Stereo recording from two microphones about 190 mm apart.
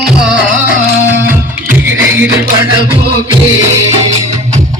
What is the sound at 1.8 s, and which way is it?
Music, 10° right (ahead or behind).